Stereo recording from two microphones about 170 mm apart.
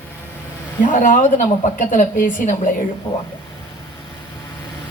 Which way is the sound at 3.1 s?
10° left (ahead or behind).